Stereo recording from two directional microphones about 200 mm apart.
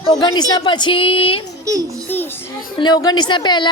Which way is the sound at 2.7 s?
20° left (ahead or behind).